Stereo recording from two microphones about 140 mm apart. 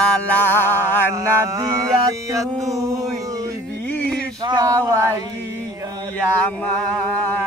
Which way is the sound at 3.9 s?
5° left (ahead or behind).